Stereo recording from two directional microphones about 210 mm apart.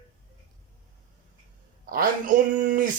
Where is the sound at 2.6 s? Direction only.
40° right (ahead or behind).